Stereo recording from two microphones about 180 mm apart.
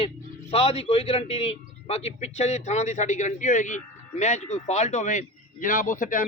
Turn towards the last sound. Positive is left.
turn(degrees=45)  # may be behind; listen again after turning